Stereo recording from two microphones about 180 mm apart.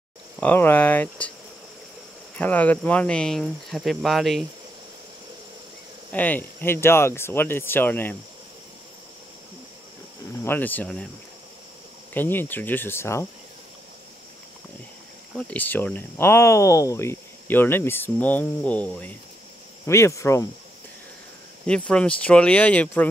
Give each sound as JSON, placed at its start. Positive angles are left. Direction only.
{"t": 0.4, "sound": "speech", "side_deg": 10}
{"t": 2.3, "sound": "cricket", "side_deg": 10}
{"t": 6.1, "sound": "speech", "side_deg": 10}
{"t": 10.4, "sound": "speech", "side_deg": 10}
{"t": 12.1, "sound": "speech", "side_deg": 10}
{"t": 15.3, "sound": "speech", "side_deg": 10}
{"t": 21.6, "sound": "speech", "side_deg": 5}